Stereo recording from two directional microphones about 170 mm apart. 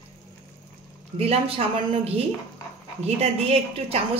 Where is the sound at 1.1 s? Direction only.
35° right (ahead or behind).